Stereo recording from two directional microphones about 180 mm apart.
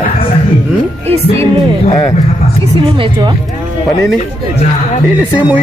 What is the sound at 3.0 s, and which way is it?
Speech, 25° right (ahead or behind).